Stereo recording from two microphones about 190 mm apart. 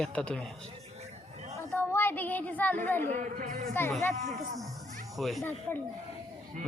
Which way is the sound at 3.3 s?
45° right (ahead or behind).